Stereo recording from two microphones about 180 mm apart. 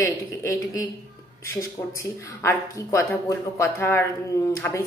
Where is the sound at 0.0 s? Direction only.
15° left (ahead or behind).